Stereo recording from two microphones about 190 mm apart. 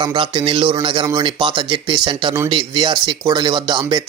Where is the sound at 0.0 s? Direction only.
25° right (ahead or behind).